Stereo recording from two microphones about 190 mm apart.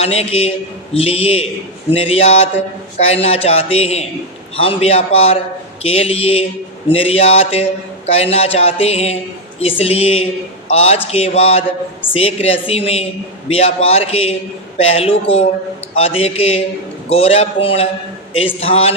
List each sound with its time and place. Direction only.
0.0 s speech: 35° left (ahead or behind)